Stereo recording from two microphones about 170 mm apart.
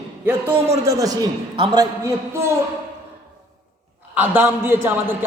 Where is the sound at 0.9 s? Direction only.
20° right (ahead or behind).